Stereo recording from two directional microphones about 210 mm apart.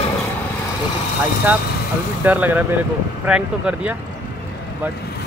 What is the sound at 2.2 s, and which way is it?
Speech, 10° right (ahead or behind).